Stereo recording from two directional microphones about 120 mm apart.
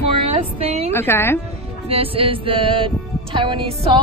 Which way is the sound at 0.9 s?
20° left (ahead or behind).